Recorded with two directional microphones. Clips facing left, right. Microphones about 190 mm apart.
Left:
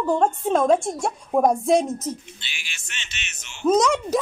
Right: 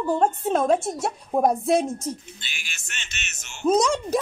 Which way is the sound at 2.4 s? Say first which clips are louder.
Even; 45° right (ahead or behind).